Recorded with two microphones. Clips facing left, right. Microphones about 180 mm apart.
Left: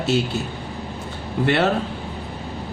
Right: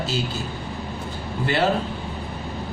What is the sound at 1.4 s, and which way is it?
Speech, 65° left (ahead or behind).